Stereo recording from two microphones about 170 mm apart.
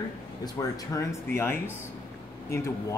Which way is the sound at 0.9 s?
15° left (ahead or behind).